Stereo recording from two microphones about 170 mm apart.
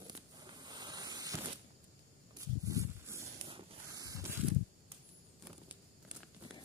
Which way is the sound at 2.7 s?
15° right (ahead or behind).